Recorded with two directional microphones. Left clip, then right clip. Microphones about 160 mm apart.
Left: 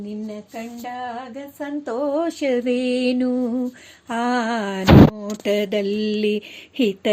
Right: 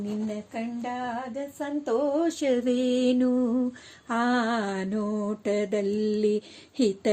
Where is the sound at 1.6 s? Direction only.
25° left (ahead or behind).